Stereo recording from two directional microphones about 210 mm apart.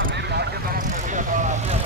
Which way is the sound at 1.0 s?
35° right (ahead or behind).